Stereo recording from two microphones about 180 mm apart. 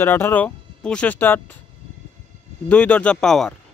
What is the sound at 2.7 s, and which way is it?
Speech, 5° left (ahead or behind).